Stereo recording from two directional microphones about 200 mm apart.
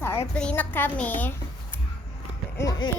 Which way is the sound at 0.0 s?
10° left (ahead or behind).